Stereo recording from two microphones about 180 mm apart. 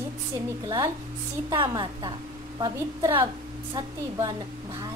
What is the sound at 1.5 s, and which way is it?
A woman's voice, 25° right (ahead or behind).